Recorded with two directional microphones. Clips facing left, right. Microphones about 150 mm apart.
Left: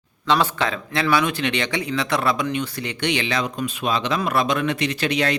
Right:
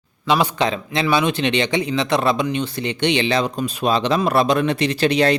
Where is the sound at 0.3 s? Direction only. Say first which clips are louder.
Right 2 dB; 15° right (ahead or behind).